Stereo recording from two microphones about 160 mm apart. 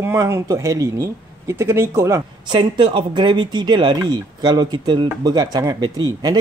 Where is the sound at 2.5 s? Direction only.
30° right (ahead or behind).